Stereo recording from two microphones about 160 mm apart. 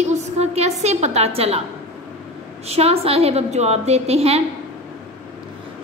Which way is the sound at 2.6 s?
40° right (ahead or behind).